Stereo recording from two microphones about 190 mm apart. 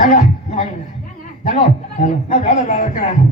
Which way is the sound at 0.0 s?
40° left (ahead or behind).